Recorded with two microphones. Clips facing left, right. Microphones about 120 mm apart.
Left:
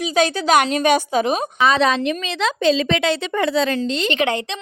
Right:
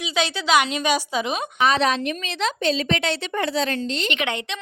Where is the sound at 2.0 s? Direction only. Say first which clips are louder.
Left 4 dB; 90° left.